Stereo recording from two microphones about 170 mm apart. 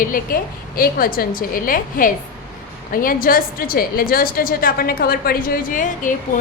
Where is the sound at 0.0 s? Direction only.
55° left (ahead or behind).